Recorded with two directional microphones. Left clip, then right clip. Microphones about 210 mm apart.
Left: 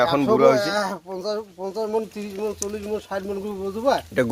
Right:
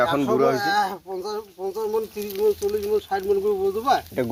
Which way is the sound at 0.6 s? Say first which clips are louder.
Right 2 dB; 50° left (ahead or behind).